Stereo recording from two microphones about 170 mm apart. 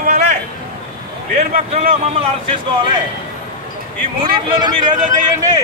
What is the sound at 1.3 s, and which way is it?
Speech, 40° right (ahead or behind).